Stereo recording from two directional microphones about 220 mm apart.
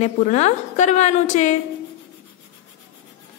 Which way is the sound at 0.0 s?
30° left (ahead or behind).